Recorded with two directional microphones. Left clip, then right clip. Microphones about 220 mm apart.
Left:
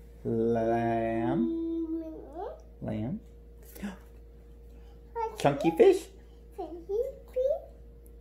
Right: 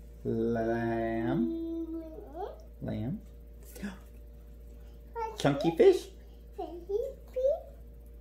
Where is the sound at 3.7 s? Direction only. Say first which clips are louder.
Left 1 dB; 25° left (ahead or behind).